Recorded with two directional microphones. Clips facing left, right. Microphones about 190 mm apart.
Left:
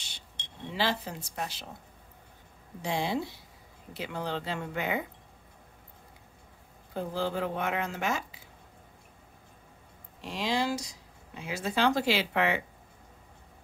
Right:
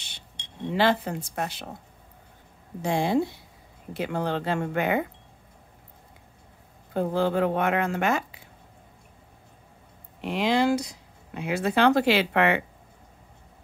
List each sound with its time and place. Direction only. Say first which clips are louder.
0.7 s speech: right 8 dB; 55° right (ahead or behind)
2.8 s speech: right 7 dB; 50° right (ahead or behind)
6.9 s speech: right 7 dB; 60° right (ahead or behind)
10.2 s speech: right 7 dB; 60° right (ahead or behind)